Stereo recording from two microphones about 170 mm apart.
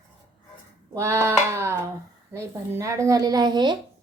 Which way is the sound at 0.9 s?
15° right (ahead or behind).